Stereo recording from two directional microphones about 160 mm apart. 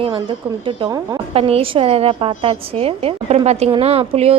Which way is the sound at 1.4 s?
40° right (ahead or behind).